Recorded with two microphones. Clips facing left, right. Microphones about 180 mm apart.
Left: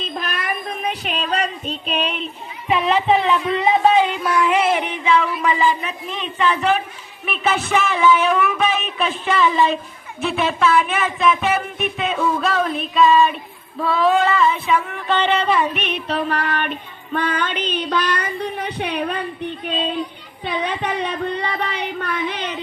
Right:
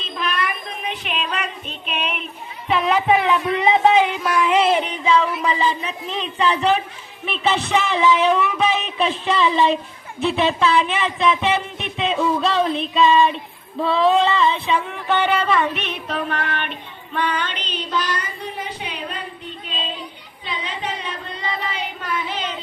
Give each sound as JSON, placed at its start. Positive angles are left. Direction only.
{"t": 0.2, "sound": "child singing", "side_deg": 45}
{"t": 2.8, "sound": "music", "side_deg": -5}
{"t": 3.2, "sound": "speech", "side_deg": -15}
{"t": 7.4, "sound": "music", "side_deg": 5}
{"t": 7.9, "sound": "speech", "side_deg": -25}
{"t": 15.0, "sound": "speech", "side_deg": -10}
{"t": 15.7, "sound": "music", "side_deg": 15}
{"t": 16.0, "sound": "child singing", "side_deg": 35}
{"t": 19.6, "sound": "speech", "side_deg": 60}
{"t": 20.4, "sound": "a sound", "side_deg": 60}